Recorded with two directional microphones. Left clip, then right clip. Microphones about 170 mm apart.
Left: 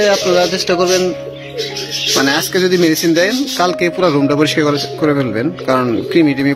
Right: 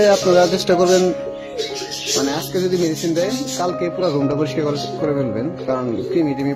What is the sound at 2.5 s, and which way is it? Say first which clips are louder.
Speech: left 5 dB; 5° left (ahead or behind).